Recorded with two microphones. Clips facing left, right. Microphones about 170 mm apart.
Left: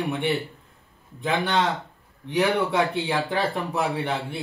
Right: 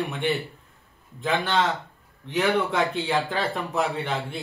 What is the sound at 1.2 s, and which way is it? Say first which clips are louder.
Speech: even; 15° left (ahead or behind).